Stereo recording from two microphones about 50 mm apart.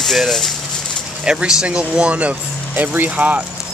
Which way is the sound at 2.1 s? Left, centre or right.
Right.